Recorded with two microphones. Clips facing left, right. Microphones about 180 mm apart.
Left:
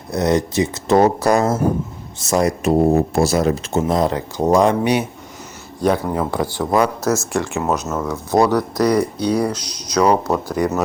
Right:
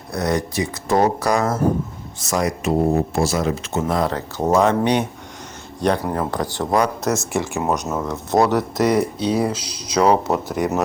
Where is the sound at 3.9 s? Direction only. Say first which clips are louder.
Left 2 dB; 20° left (ahead or behind).